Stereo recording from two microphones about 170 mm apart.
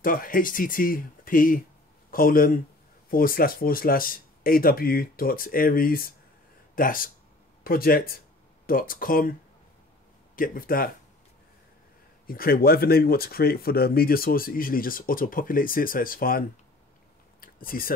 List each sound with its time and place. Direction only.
0.0 s speech: 55° left (ahead or behind)
10.3 s speech: 55° left (ahead or behind)
12.3 s speech: 60° left (ahead or behind)
17.4 s a sound: 55° left (ahead or behind)